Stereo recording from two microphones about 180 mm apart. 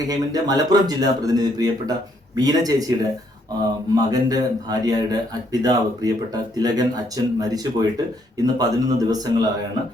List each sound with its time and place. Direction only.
0.1 s speech: 20° right (ahead or behind)